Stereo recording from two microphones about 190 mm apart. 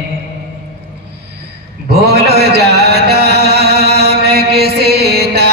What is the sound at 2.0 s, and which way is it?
Music, 60° right (ahead or behind).